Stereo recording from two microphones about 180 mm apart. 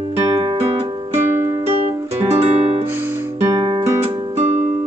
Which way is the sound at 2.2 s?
35° right (ahead or behind).